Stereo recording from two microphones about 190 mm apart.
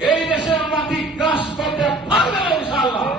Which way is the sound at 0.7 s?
Centre (ahead or behind).